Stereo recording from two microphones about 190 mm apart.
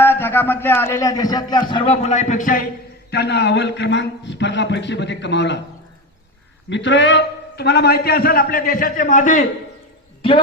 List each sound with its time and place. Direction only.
0.0 s speech: 10° left (ahead or behind); by 2.6 s 45° left (ahead or behind)
3.1 s a man's voice: 60° left (ahead or behind)
6.7 s a man's voice: 70° left (ahead or behind); by 9.5 s 40° left (ahead or behind)